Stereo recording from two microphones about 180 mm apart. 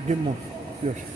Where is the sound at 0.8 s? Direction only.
35° right (ahead or behind).